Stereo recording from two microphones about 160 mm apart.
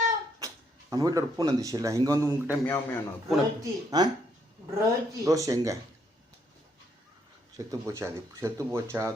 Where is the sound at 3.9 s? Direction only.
25° right (ahead or behind).